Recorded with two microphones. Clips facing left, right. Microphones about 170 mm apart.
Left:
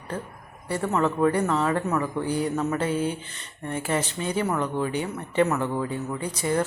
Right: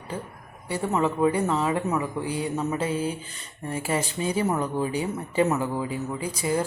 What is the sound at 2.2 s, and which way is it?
Speech, 30° left (ahead or behind).